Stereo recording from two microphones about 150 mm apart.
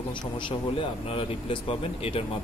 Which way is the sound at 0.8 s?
35° left (ahead or behind).